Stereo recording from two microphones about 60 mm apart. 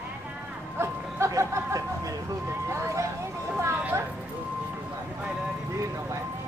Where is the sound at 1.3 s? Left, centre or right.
Right.